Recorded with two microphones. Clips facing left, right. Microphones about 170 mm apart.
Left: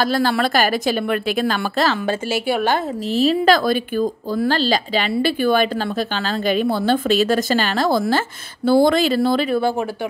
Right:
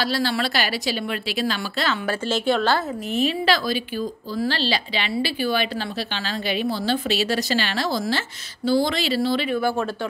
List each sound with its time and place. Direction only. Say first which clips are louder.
0.0 s speech: left 5 dB; 50° left (ahead or behind)
2.2 s a woman's voice: right 1 dB; 10° left (ahead or behind)
3.1 s speech: left 6 dB; 35° left (ahead or behind)
9.6 s speech: left 3 dB; 25° left (ahead or behind)